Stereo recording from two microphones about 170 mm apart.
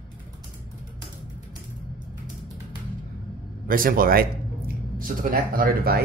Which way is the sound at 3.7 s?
55° right (ahead or behind).